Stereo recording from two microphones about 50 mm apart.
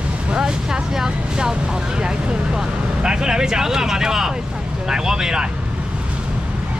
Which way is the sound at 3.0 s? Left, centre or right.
Centre.